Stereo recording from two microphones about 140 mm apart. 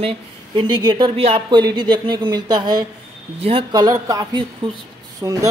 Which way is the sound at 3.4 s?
45° right (ahead or behind).